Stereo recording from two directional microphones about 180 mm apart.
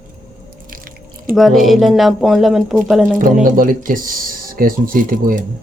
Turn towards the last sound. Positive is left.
turn(degrees=-50)  # may be behind; listen again after turning